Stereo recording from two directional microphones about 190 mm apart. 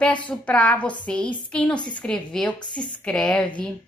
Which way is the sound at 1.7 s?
25° left (ahead or behind).